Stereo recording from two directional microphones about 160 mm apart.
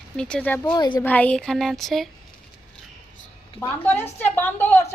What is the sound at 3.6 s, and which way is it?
A woman's voice, 15° left (ahead or behind).